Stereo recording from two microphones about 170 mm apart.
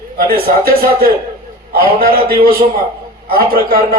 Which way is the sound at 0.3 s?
65° right (ahead or behind).